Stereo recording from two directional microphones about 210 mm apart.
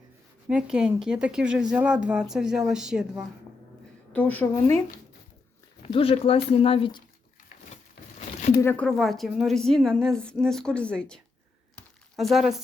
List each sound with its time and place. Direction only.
0.4 s a woman's voice: 5° right (ahead or behind)
4.1 s a woman's voice: 10° left (ahead or behind)
5.9 s speech: 25° left (ahead or behind)
8.4 s a sound: 35° left (ahead or behind)
8.6 s a woman's voice: 5° left (ahead or behind)